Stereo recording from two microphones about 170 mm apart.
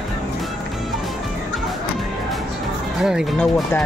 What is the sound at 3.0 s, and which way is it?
Speech, 5° right (ahead or behind).